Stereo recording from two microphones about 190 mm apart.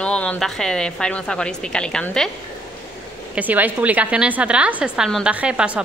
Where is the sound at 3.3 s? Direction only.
10° right (ahead or behind).